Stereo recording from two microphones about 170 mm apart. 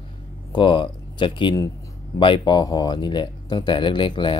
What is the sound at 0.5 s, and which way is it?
Speech, 30° left (ahead or behind).